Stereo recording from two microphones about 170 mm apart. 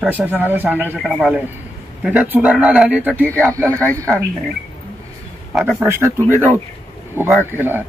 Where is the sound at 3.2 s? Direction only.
5° left (ahead or behind).